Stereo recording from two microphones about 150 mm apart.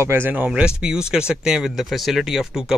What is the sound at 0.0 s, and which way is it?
A man's voice, 15° right (ahead or behind).